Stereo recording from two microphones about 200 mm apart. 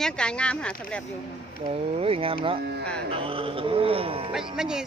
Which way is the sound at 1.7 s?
30° right (ahead or behind).